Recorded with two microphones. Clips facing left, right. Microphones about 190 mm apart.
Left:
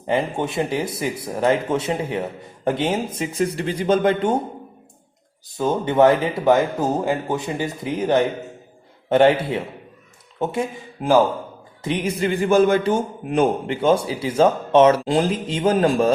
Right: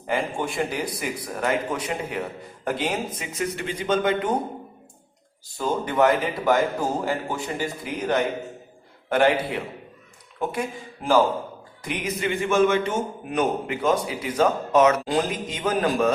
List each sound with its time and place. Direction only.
0.1 s a man's voice: 25° left (ahead or behind)
5.5 s a man's voice: 25° left (ahead or behind)